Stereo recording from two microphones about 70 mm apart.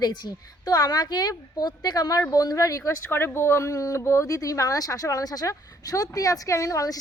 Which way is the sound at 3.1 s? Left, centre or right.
Left.